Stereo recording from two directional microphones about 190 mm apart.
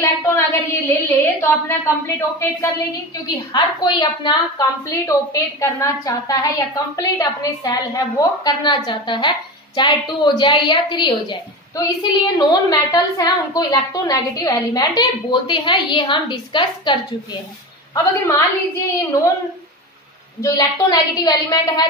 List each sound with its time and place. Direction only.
0.0 s a woman's voice: 10° left (ahead or behind)
17.9 s a woman's voice: 15° left (ahead or behind)
20.4 s a woman's voice: 20° left (ahead or behind)